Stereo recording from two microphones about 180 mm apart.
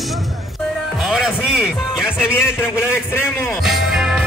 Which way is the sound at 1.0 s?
5° right (ahead or behind).